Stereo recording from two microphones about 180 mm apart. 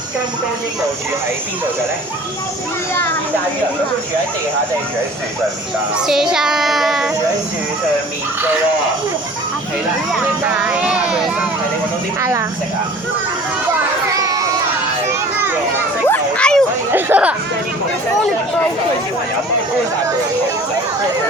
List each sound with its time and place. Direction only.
6.0 s speech: centre (ahead or behind)
10.1 s speech: 5° right (ahead or behind)
12.2 s speech: 15° right (ahead or behind)
14.1 s children playing: 20° right (ahead or behind)
16.0 s a sound: 10° left (ahead or behind)
16.9 s speech: 10° right (ahead or behind)